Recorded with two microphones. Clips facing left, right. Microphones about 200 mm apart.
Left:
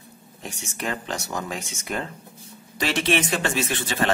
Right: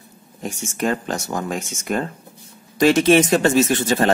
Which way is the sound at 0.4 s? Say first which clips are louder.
Right 9 dB; 45° right (ahead or behind).